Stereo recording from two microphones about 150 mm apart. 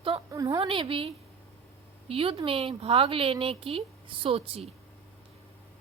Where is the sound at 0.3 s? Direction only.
25° right (ahead or behind).